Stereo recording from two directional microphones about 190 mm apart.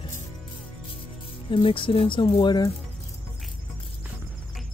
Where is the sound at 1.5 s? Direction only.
25° left (ahead or behind).